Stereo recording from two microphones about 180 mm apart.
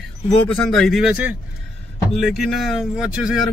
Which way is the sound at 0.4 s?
Centre (ahead or behind).